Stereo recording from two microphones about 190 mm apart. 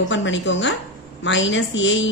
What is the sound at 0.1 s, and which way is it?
A woman's voice, 80° left.